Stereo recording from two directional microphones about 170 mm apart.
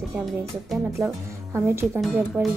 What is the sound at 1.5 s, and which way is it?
Speech, 15° right (ahead or behind).